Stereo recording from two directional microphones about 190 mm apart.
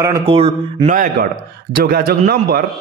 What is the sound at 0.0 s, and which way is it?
A man's voice, 25° right (ahead or behind).